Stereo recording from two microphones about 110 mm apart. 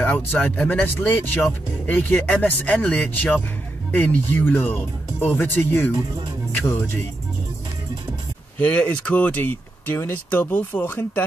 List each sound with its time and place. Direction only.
0.0 s speech: 15° left (ahead or behind)
8.5 s speech: 15° left (ahead or behind)